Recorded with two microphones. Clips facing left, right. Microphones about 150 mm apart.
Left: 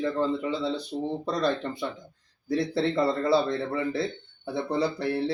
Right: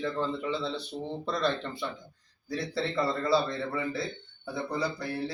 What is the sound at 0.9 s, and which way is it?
Speech, 30° left (ahead or behind).